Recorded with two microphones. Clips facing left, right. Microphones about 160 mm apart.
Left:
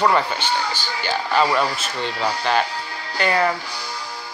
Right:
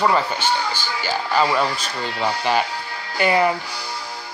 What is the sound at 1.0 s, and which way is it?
Speech, 5° right (ahead or behind).